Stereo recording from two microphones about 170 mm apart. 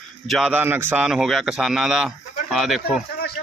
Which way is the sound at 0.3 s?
5° right (ahead or behind).